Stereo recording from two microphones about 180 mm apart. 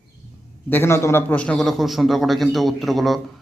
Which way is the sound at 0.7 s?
15° left (ahead or behind).